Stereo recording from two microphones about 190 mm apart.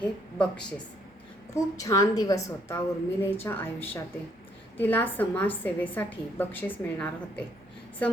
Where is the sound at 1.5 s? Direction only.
15° left (ahead or behind).